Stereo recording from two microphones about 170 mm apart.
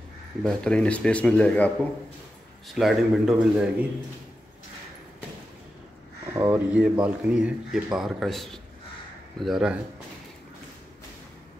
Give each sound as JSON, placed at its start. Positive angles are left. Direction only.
{"t": 0.4, "sound": "speech", "side_deg": 5}
{"t": 2.7, "sound": "a man's voice", "side_deg": 0}
{"t": 6.3, "sound": "speech", "side_deg": -15}
{"t": 6.7, "sound": "a man's voice", "side_deg": -5}